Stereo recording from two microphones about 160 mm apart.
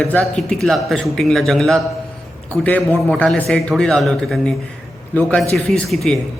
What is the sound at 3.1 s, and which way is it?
A man's voice, 5° left (ahead or behind).